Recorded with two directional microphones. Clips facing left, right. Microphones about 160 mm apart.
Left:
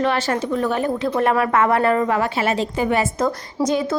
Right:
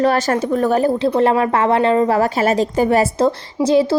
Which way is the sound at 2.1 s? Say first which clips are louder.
Right 5 dB; 40° right (ahead or behind).